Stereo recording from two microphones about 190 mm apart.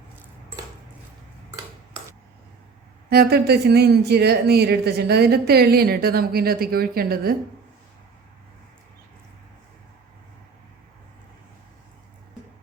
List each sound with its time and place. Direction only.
3.1 s speech: 55° right (ahead or behind)